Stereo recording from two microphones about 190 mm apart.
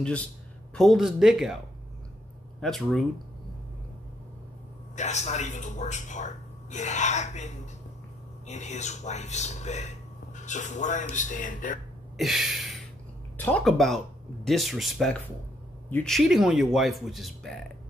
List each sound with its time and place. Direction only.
0.7 s speech: centre (ahead or behind)
2.6 s speech: centre (ahead or behind)
4.9 s a man's voice: 35° left (ahead or behind)
12.2 s speech: centre (ahead or behind)